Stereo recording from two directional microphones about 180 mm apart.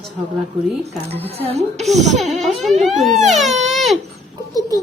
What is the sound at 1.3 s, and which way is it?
Speech, 35° right (ahead or behind).